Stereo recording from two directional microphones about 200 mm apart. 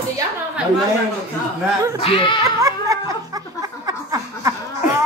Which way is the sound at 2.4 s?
15° right (ahead or behind).